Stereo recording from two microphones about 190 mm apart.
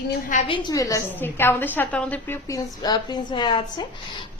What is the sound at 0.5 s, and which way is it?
A woman's voice, 15° left (ahead or behind).